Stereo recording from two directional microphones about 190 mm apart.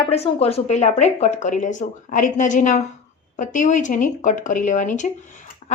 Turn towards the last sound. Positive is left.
turn(degrees=45)  # may be behind; listen again after turning